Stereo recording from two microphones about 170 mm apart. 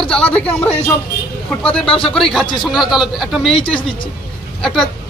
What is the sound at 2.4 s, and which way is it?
Speech, 25° left (ahead or behind).